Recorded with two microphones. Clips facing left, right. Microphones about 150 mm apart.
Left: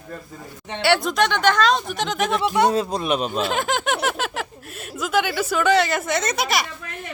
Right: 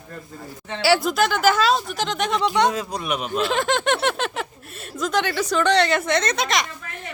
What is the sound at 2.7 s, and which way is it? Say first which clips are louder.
Speech: left 4 dB; 30° left (ahead or behind).